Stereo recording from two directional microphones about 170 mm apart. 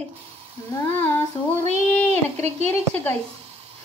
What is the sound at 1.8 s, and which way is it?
Speech, 10° left (ahead or behind).